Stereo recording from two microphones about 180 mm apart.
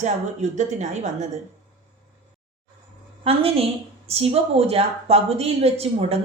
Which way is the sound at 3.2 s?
35° right (ahead or behind).